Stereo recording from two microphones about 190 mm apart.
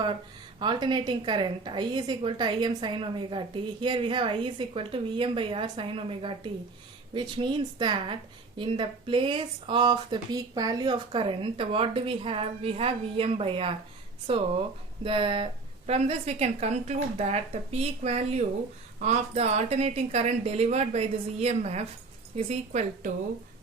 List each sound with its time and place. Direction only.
0.6 s a woman's voice: 25° right (ahead or behind)